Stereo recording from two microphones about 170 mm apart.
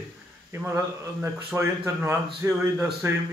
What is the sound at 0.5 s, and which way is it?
Speech, 15° right (ahead or behind).